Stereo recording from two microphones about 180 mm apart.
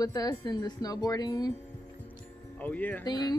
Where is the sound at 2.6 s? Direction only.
10° left (ahead or behind).